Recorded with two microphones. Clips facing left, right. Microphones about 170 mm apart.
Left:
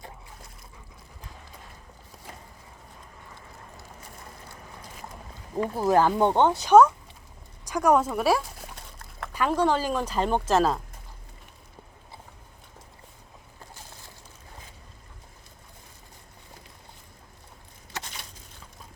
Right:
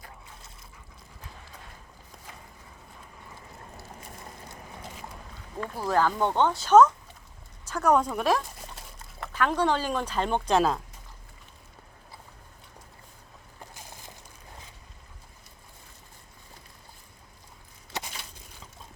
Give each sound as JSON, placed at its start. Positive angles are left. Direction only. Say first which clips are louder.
{"t": 5.5, "sound": "speech", "louder": "left 5 dB", "side_deg": 20}